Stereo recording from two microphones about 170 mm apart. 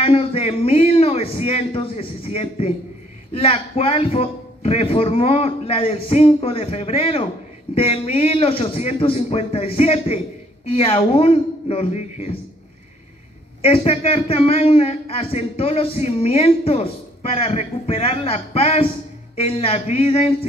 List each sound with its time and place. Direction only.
0.0 s speech: 35° left (ahead or behind)
13.6 s speech: 35° left (ahead or behind)